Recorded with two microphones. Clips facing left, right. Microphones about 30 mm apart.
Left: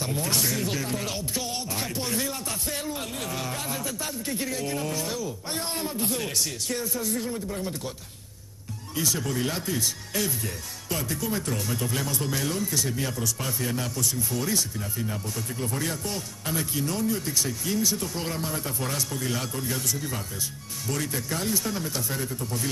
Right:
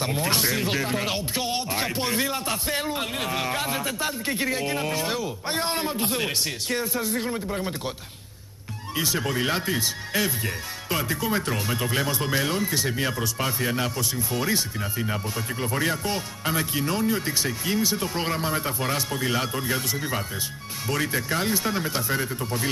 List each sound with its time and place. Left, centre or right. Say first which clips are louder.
0.0 s speech: right 3 dB; right
8.9 s speech: right 2 dB; right